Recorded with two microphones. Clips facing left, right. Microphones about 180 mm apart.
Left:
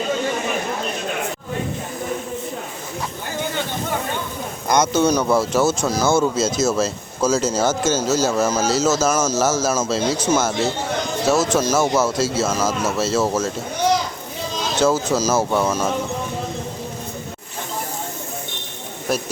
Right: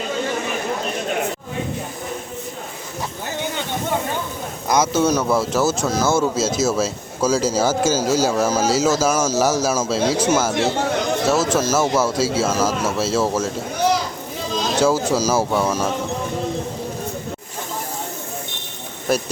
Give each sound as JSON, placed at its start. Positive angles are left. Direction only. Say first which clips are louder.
{"t": 4.7, "sound": "speech", "louder": "left 1 dB", "side_deg": -5}
{"t": 10.5, "sound": "speech", "louder": "right 2 dB", "side_deg": -70}
{"t": 11.4, "sound": "speech", "louder": "even", "side_deg": -5}
{"t": 14.8, "sound": "speech", "louder": "even", "side_deg": -5}
{"t": 19.1, "sound": "speech", "louder": "right 2 dB", "side_deg": 0}